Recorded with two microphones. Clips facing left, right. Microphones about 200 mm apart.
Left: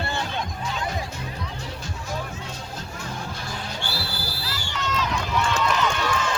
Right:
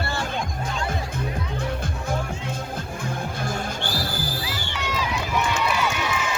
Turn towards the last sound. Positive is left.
turn(degrees=-10)  # may be behind; listen again after turning